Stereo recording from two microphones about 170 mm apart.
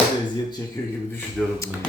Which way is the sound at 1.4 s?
5° left (ahead or behind).